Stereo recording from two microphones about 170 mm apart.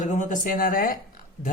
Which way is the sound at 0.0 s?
45° left (ahead or behind).